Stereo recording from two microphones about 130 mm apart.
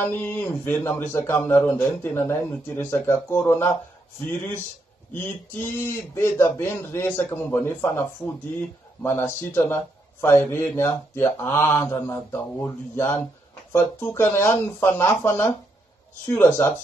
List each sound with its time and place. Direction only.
0.0 s a man's voice: 15° left (ahead or behind)
5.1 s a man's voice: 15° left (ahead or behind)